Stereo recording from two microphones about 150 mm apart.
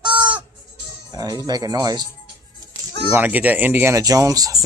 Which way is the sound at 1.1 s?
25° right (ahead or behind).